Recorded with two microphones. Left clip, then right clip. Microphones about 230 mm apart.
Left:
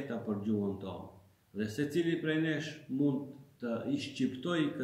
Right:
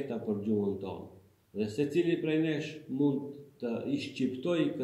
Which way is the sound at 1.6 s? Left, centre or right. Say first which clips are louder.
Right 4 dB; centre.